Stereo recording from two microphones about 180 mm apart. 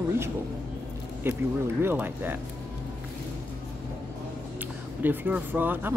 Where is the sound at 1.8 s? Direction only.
10° right (ahead or behind).